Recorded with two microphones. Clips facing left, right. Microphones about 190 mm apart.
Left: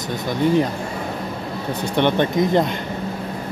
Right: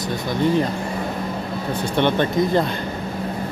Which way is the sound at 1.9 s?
15° left (ahead or behind).